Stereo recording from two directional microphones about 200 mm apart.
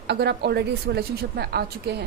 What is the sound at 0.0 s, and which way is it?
A woman's voice, 55° right (ahead or behind).